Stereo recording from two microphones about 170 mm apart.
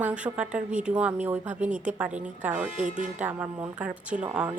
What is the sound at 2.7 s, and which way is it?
Speech, 45° right (ahead or behind).